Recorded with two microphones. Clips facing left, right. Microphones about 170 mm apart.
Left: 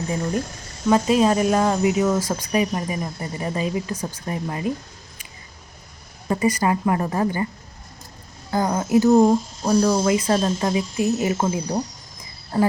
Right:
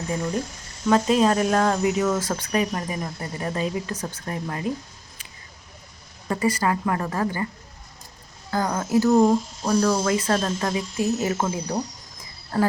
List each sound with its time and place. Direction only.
0.9 s speech: 5° left (ahead or behind)
6.2 s a woman's voice: 20° left (ahead or behind)
8.4 s speech: 20° left (ahead or behind)